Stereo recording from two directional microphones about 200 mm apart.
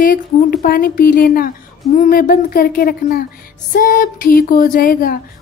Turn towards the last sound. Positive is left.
turn(degrees=45)  # may be behind; listen again after turning